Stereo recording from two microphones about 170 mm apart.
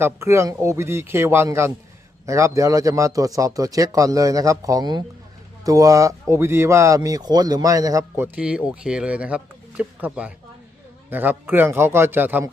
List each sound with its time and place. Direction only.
0.0 s a man's voice: 15° right (ahead or behind)